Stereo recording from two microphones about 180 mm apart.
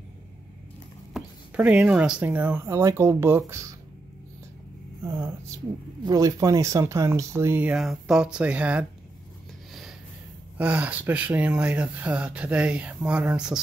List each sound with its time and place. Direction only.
1.1 s speech: 5° right (ahead or behind)
5.1 s speech: 15° right (ahead or behind)
9.7 s a sound: centre (ahead or behind)
10.6 s speech: 10° right (ahead or behind)